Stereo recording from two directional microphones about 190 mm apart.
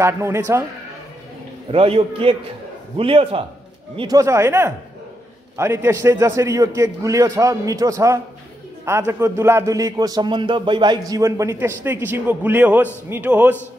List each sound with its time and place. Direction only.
0.0 s a man's voice: 15° right (ahead or behind)
1.7 s a man's voice: 30° right (ahead or behind); by 13.6 s 10° right (ahead or behind)